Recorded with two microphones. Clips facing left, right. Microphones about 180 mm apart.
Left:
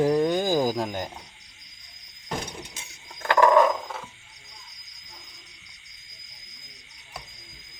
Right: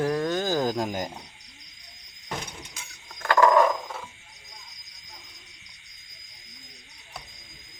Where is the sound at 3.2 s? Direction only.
20° left (ahead or behind).